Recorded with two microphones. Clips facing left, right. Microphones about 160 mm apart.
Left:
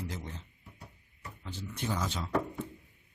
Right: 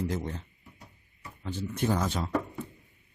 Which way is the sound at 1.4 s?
50° right (ahead or behind).